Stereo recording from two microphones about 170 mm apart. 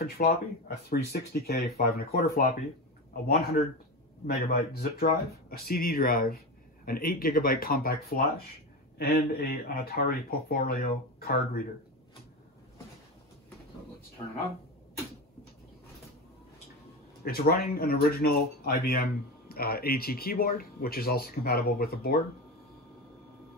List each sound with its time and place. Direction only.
0.0 s speech: 65° left (ahead or behind)
3.3 s speech: 65° left (ahead or behind)
17.2 s speech: 65° left (ahead or behind)